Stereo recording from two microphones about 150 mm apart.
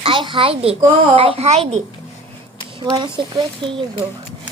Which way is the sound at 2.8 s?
30° right (ahead or behind).